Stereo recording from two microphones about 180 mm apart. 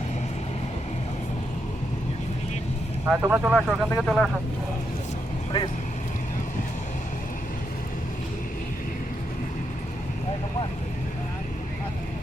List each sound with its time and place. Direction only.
3.1 s speech: 10° right (ahead or behind)